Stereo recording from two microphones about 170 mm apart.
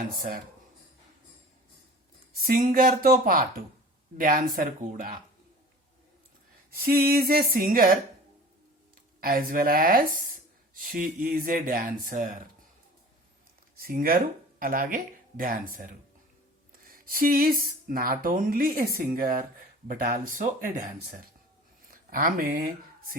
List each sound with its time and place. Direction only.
2.3 s speech: 60° right (ahead or behind)
6.7 s speech: 60° right (ahead or behind)
9.2 s speech: 55° right (ahead or behind)
13.7 s speech: 60° right (ahead or behind)